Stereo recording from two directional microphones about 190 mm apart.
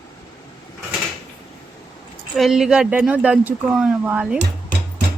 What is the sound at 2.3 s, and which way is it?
Speech, centre (ahead or behind).